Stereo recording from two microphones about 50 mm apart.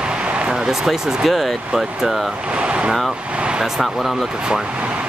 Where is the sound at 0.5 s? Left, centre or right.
Centre.